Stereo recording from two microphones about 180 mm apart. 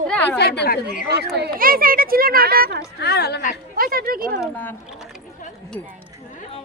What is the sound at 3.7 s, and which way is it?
Speech, 55° right (ahead or behind).